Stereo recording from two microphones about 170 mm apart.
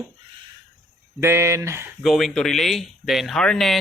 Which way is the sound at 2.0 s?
Centre (ahead or behind).